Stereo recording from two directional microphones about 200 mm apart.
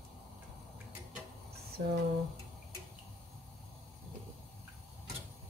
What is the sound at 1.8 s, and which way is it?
Speech, 45° right (ahead or behind).